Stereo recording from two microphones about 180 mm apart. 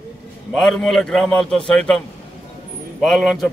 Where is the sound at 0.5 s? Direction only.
Centre (ahead or behind).